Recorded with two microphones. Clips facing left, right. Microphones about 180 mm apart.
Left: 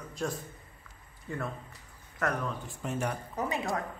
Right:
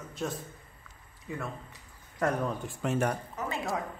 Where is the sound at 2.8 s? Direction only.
75° right (ahead or behind).